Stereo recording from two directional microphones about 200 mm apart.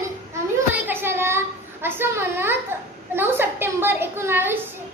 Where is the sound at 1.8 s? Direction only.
10° right (ahead or behind).